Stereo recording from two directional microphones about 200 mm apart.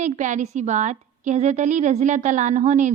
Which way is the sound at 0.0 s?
35° right (ahead or behind).